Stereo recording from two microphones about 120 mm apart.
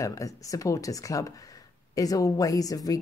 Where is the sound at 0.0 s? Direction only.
30° left (ahead or behind).